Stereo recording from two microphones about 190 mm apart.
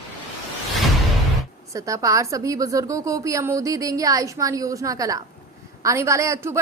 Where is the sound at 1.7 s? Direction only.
15° right (ahead or behind).